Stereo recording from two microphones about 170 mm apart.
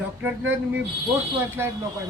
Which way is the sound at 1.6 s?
15° right (ahead or behind).